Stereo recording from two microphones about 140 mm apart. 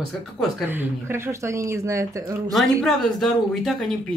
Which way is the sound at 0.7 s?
15° right (ahead or behind).